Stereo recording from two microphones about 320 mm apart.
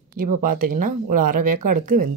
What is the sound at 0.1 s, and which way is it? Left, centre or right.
Speech, right.